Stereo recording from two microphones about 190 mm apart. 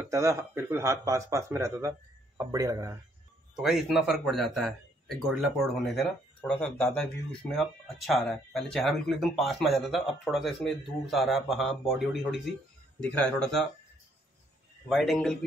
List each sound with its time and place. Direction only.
0.0 s speech: 15° right (ahead or behind)
3.5 s speech: 5° right (ahead or behind)
14.9 s speech: centre (ahead or behind)